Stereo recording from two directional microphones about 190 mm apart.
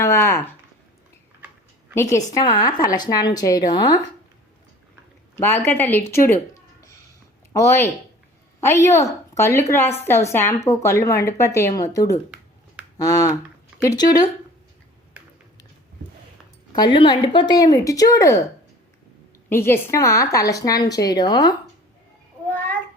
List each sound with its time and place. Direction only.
0.0 s a sound: 15° left (ahead or behind)
2.3 s a woman's voice: 20° left (ahead or behind)
5.4 s a woman's voice: 10° left (ahead or behind)
7.5 s a woman's voice: 15° left (ahead or behind)
16.7 s a woman's voice: 25° left (ahead or behind)
19.5 s a woman's voice: 10° left (ahead or behind)